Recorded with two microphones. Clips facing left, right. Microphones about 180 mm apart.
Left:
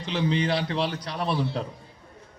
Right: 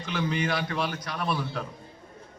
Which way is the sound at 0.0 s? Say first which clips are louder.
Left 3 dB; 30° left (ahead or behind).